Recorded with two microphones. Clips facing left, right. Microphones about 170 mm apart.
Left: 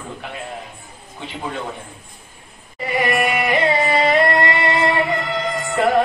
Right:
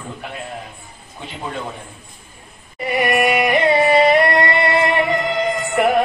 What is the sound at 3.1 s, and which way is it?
Music, 15° right (ahead or behind).